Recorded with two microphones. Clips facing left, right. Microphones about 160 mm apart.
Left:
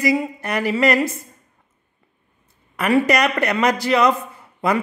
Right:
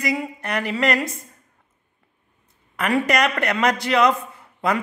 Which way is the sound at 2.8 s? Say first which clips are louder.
Left 3 dB; 5° left (ahead or behind).